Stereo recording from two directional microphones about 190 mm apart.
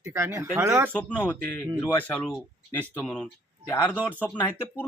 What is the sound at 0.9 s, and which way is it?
Speech, 5° left (ahead or behind).